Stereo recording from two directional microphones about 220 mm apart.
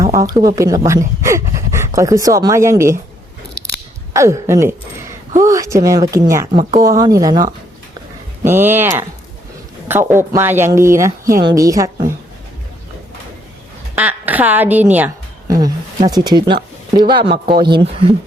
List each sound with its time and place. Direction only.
0.0 s speech: 15° right (ahead or behind)
4.1 s speech: 15° right (ahead or behind)
13.9 s a woman's voice: 5° right (ahead or behind)